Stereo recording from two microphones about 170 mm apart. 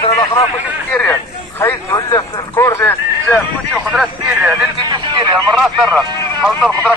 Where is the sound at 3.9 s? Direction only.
10° right (ahead or behind).